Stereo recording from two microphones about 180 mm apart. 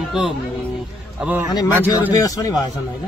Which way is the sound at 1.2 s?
10° right (ahead or behind).